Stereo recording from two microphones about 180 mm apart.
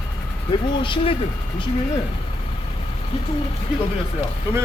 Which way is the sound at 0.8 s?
30° left (ahead or behind).